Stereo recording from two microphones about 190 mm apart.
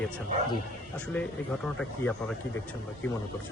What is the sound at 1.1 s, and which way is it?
Speech, 5° left (ahead or behind).